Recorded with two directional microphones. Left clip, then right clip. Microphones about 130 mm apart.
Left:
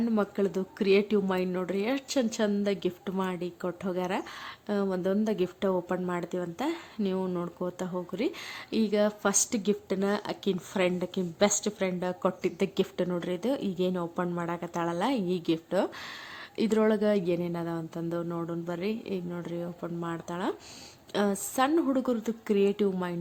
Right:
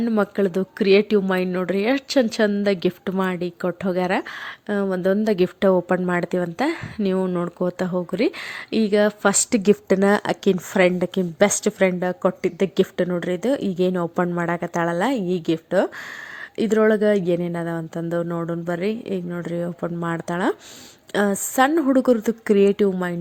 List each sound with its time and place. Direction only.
0.2 s speech: 35° right (ahead or behind)
21.1 s speech: 40° right (ahead or behind)